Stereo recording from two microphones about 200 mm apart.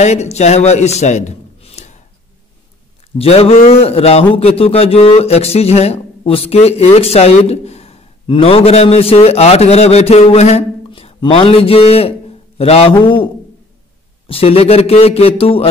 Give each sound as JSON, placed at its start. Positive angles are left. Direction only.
{"t": 0.0, "sound": "a man's voice", "side_deg": 35}
{"t": 3.2, "sound": "a man's voice", "side_deg": 30}